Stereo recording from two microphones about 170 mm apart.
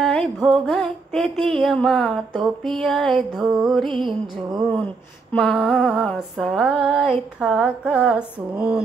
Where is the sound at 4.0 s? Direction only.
30° right (ahead or behind).